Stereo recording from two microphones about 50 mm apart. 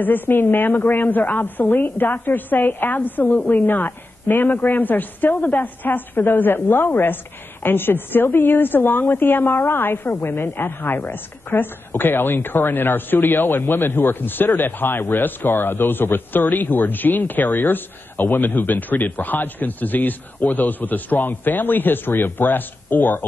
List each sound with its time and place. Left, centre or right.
0.0 s a woman's voice: left